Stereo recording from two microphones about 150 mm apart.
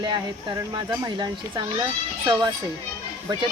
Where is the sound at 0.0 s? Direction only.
30° right (ahead or behind).